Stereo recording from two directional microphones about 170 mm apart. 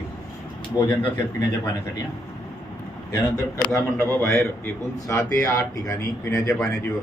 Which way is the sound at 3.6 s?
15° left (ahead or behind).